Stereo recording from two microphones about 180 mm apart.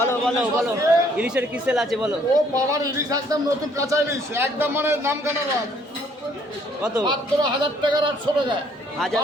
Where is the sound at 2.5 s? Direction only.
20° right (ahead or behind).